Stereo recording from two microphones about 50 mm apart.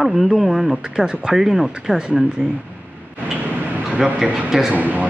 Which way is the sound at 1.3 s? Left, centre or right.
Centre.